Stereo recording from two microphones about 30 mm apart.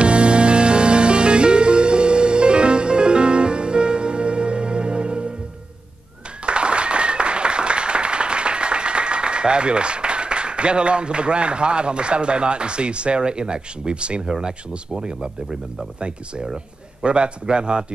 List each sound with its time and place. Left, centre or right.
0.0 s music: right
6.4 s applause: right
14.2 s a man's voice: right
17.0 s a man's voice: right